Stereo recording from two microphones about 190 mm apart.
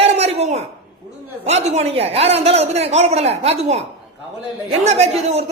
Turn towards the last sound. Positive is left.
turn(degrees=-35)  # may be behind; listen again after turning